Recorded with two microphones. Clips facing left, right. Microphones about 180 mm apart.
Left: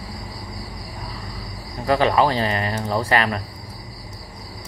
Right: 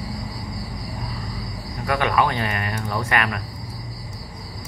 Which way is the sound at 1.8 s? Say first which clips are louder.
Left 4 dB; 30° left (ahead or behind).